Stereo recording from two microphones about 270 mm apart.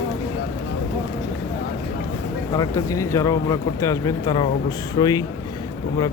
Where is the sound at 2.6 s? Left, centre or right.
Centre.